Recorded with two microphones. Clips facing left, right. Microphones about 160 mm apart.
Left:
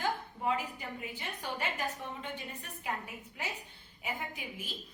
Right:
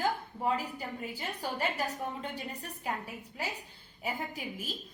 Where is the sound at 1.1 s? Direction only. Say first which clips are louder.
Right 4 dB; 35° right (ahead or behind).